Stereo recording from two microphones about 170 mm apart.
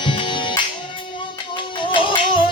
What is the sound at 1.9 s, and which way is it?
Music, 30° left (ahead or behind).